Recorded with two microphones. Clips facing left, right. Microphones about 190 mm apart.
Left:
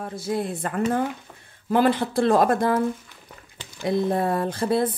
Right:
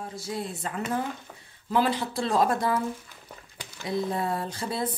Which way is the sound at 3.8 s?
55° left (ahead or behind).